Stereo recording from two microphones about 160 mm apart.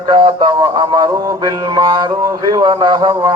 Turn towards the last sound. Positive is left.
turn(degrees=-30)  # may be behind; listen again after turning